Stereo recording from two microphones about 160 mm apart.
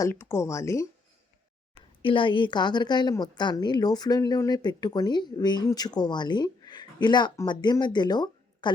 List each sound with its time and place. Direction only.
0.0 s a woman's voice: 15° left (ahead or behind)
2.0 s a woman's voice: 30° left (ahead or behind)